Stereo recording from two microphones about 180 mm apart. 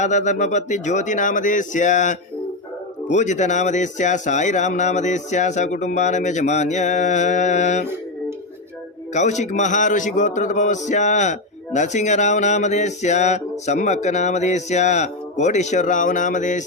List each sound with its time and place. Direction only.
0.0 s a man's voice: 40° left (ahead or behind)
9.1 s a man's voice: 40° left (ahead or behind)